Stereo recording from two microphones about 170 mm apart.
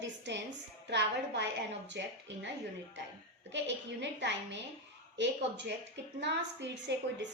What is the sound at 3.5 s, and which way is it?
A woman's voice, 90° right.